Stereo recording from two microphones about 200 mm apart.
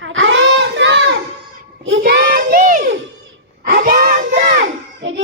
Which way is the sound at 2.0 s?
55° right (ahead or behind).